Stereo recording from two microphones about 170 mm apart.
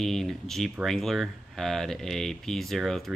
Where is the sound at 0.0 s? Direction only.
Centre (ahead or behind).